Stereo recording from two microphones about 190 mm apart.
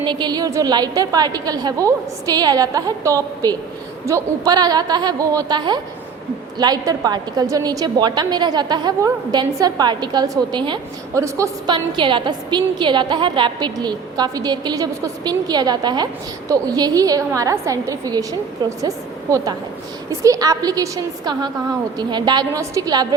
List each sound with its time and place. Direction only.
0.0 s a woman's voice: 25° right (ahead or behind)